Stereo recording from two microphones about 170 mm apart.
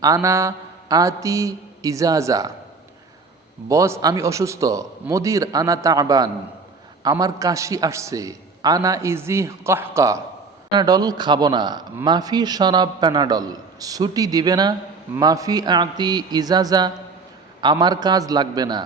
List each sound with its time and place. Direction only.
0.0 s a man's voice: 20° right (ahead or behind)
3.7 s a man's voice: 15° right (ahead or behind)